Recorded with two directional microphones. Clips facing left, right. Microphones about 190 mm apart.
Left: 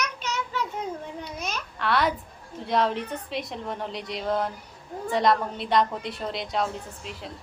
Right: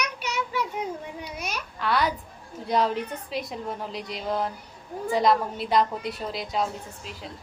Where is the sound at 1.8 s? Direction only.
Centre (ahead or behind).